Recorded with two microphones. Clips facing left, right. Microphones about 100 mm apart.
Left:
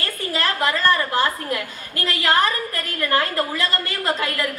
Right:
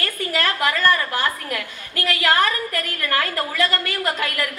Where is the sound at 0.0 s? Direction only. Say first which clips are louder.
Right 1 dB; 30° left (ahead or behind).